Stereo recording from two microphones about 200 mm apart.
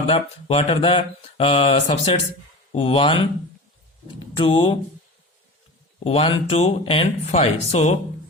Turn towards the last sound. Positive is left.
turn(degrees=35)  # may be behind; listen again after turning